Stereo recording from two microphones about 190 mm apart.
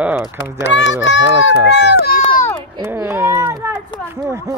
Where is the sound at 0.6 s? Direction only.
70° left (ahead or behind).